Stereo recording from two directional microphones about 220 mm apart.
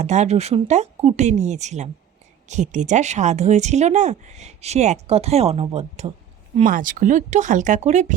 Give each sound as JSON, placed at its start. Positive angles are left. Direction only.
{"t": 0.0, "sound": "speech", "side_deg": -30}